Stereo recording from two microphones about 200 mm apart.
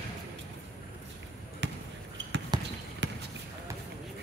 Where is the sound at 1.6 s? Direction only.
60° right (ahead or behind).